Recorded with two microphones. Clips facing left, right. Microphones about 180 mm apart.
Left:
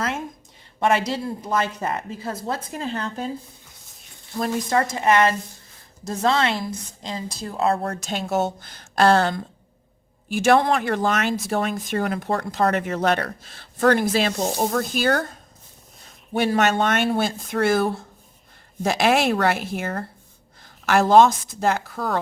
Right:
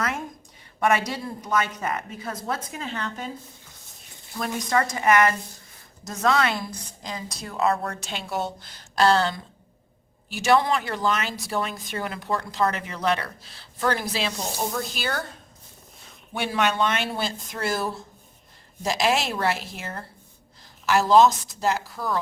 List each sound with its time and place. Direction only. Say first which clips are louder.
0.8 s a woman's voice: left 2 dB; 30° left (ahead or behind)
4.4 s a woman's voice: left 3 dB; 30° left (ahead or behind); by 22.2 s 60° left (ahead or behind)